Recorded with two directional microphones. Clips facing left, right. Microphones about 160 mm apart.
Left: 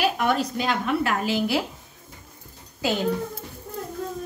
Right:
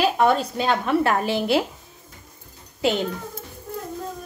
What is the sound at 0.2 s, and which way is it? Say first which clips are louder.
Speech: right 4 dB; 35° right (ahead or behind).